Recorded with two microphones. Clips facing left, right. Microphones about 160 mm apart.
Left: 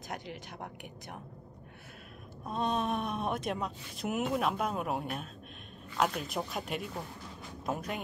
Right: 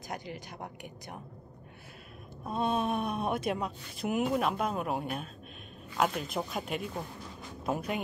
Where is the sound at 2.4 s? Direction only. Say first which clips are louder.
Right 2 dB; 5° right (ahead or behind).